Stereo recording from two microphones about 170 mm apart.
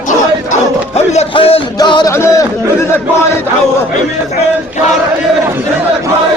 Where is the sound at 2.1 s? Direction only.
15° left (ahead or behind).